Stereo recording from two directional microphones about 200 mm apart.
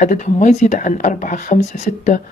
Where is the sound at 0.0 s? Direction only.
40° left (ahead or behind).